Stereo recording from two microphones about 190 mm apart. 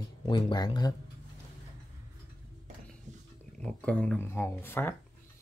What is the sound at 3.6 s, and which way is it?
Speech, 5° left (ahead or behind).